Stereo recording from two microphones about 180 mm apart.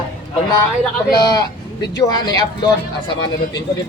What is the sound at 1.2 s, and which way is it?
Speech, 20° left (ahead or behind).